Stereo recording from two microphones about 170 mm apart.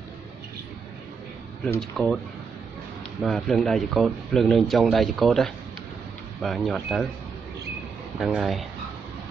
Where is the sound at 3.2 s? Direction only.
Centre (ahead or behind).